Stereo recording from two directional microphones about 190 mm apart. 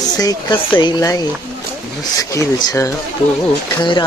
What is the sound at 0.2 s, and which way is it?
Speech, 20° left (ahead or behind).